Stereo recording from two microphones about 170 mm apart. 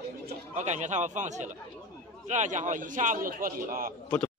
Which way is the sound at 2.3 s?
45° right (ahead or behind).